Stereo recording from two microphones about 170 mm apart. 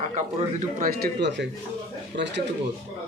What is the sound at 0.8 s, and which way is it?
Speech, 65° right (ahead or behind).